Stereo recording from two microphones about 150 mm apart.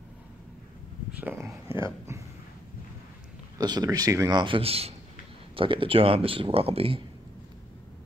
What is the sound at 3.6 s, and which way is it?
A man's voice, 25° right (ahead or behind).